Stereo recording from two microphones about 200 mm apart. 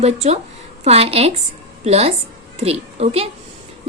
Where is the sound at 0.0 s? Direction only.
30° right (ahead or behind).